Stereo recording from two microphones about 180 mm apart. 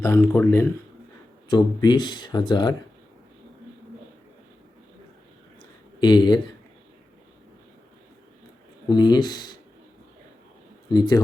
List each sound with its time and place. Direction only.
0.0 s speech: 10° left (ahead or behind)
1.5 s speech: 25° left (ahead or behind)
6.0 s speech: 25° left (ahead or behind)
8.9 s speech: 25° left (ahead or behind)
10.8 s speech: 25° left (ahead or behind)